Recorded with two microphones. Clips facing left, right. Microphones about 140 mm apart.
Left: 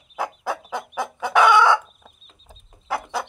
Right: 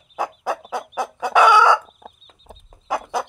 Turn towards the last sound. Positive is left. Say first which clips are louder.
# right 3 dB
turn(degrees=-15)  # may be behind; listen again after turning